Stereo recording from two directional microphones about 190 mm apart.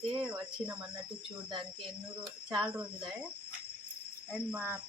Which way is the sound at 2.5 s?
5° right (ahead or behind).